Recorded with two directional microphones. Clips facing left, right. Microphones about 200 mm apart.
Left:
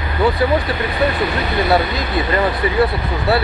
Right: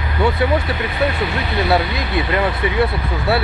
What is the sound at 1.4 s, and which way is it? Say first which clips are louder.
Speech: left 1 dB; centre (ahead or behind).